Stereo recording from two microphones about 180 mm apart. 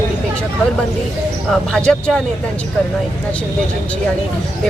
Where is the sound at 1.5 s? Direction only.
5° left (ahead or behind).